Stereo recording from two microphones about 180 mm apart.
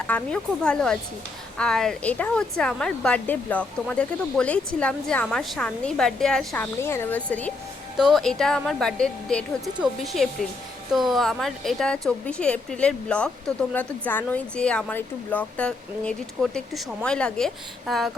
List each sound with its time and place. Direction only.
0.1 s a woman's voice: 5° left (ahead or behind)
6.8 s a woman's voice: 15° left (ahead or behind)